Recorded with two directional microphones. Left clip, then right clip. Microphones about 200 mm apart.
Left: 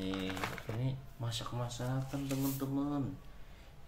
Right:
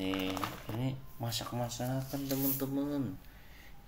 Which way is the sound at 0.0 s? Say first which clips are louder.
Right 3 dB; centre (ahead or behind).